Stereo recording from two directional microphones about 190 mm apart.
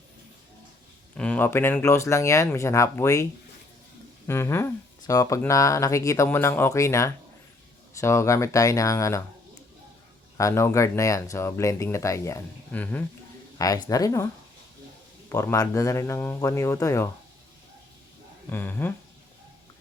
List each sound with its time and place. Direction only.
1.1 s speech: 5° left (ahead or behind)
4.3 s speech: 15° left (ahead or behind)
10.3 s speech: 15° left (ahead or behind)
13.6 s a woman's voice: 20° left (ahead or behind)
15.3 s speech: 15° left (ahead or behind)
18.4 s speech: 10° left (ahead or behind)